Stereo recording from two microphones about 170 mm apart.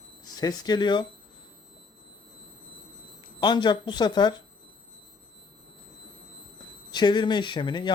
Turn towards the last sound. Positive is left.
turn(degrees=25)  # may be behind; listen again after turning